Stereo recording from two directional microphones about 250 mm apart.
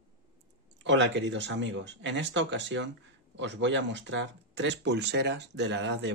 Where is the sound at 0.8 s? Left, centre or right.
Right.